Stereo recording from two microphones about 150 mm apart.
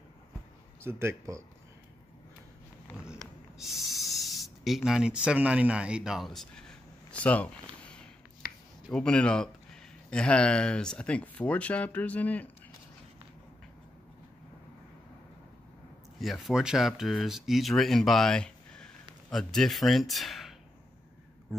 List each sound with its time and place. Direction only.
0.8 s speech: 15° right (ahead or behind)
3.5 s speech: centre (ahead or behind)
16.2 s speech: centre (ahead or behind)